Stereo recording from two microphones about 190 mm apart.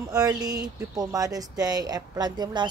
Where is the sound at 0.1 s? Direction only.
20° right (ahead or behind).